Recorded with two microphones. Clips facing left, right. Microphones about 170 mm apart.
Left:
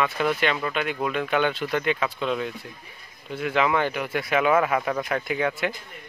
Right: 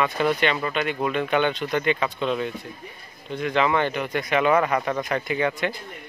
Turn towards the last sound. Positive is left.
turn(degrees=0)  # may be behind; listen again after turning